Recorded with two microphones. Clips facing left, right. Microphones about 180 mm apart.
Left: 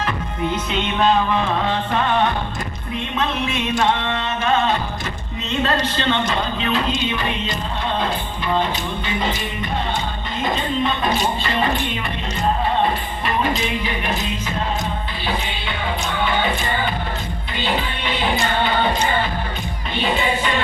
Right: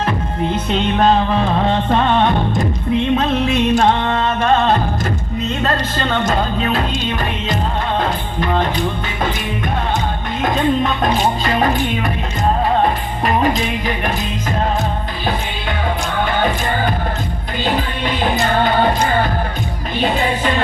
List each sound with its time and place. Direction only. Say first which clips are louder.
0.5 s music: right 7 dB; 35° right (ahead or behind)
3.2 s music: right 6 dB; 40° right (ahead or behind)
13.2 s music: right 5 dB; 45° right (ahead or behind)